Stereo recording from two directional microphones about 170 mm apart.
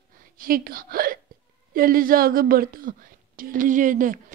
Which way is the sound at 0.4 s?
55° right (ahead or behind).